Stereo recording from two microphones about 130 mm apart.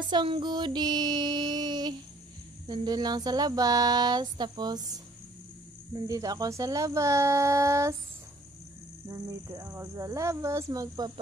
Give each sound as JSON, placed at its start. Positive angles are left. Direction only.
{"t": 0.1, "sound": "a sound", "side_deg": -35}
{"t": 5.9, "sound": "speech", "side_deg": -30}
{"t": 9.1, "sound": "speech", "side_deg": -25}